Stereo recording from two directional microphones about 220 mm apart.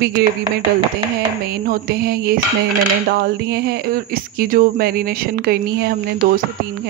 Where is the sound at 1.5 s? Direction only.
45° right (ahead or behind).